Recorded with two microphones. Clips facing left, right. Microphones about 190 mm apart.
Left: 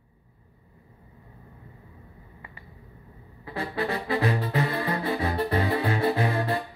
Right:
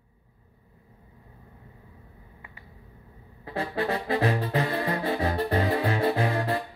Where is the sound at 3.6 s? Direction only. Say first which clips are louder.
Right 1 dB; 40° right (ahead or behind).